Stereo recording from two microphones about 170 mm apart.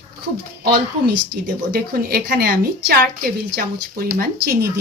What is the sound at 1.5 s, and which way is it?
Speech, 65° right (ahead or behind).